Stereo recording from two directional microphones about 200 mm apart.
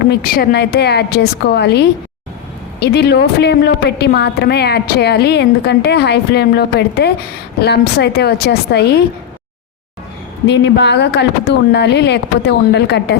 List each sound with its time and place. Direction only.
0.1 s a woman's voice: 50° left (ahead or behind)
10.4 s a woman's voice: 60° left (ahead or behind)